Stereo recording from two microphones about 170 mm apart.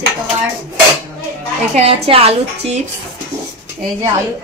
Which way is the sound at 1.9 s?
35° right (ahead or behind).